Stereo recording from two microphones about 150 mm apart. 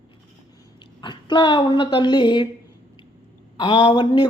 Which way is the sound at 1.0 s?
30° left (ahead or behind).